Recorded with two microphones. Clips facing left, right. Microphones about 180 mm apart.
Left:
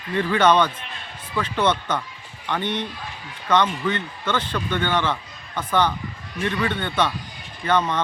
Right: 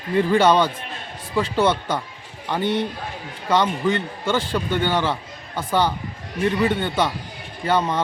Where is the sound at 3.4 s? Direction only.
10° right (ahead or behind).